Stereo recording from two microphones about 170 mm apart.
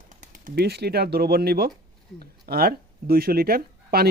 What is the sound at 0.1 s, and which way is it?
A man's voice, 50° right (ahead or behind).